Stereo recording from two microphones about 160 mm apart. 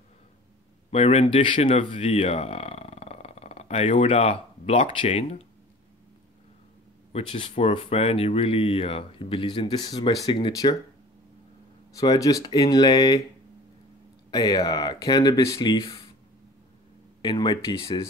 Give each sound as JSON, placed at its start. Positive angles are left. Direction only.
{"t": 0.8, "sound": "speech", "side_deg": 40}
{"t": 1.2, "sound": "speech", "side_deg": 30}
{"t": 7.1, "sound": "speech", "side_deg": 35}
{"t": 10.2, "sound": "speech", "side_deg": 25}
{"t": 12.0, "sound": "speech", "side_deg": 20}
{"t": 14.3, "sound": "speech", "side_deg": 25}
{"t": 17.2, "sound": "speech", "side_deg": 30}